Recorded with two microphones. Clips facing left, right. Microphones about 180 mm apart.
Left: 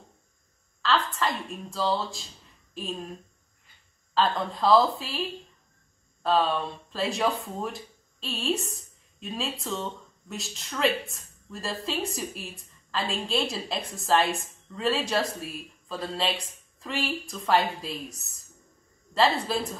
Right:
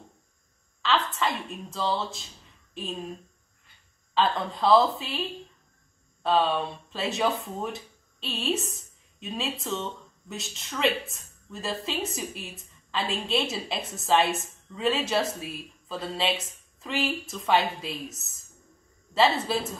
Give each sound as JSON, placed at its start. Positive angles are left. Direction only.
{"t": 0.8, "sound": "a woman's voice", "side_deg": 0}
{"t": 4.1, "sound": "speech", "side_deg": 0}
{"t": 6.2, "sound": "speech", "side_deg": 0}